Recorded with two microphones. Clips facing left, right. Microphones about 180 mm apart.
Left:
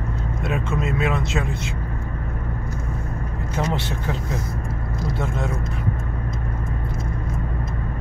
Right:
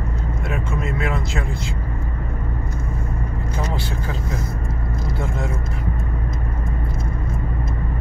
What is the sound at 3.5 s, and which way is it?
Speech, 20° left (ahead or behind).